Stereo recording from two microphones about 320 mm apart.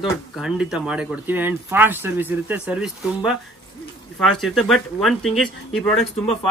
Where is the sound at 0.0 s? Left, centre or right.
Centre.